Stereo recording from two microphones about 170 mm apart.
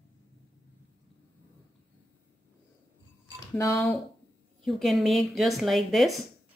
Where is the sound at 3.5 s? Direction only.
20° left (ahead or behind).